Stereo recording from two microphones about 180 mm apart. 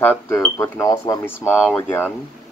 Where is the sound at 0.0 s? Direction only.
10° left (ahead or behind).